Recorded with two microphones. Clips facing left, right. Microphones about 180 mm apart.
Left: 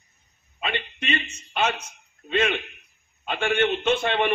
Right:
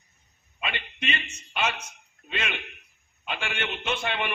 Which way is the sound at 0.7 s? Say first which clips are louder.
Left 4 dB; 50° left (ahead or behind).